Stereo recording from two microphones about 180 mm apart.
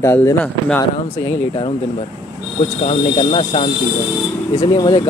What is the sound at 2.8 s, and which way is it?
Speech, 35° left (ahead or behind).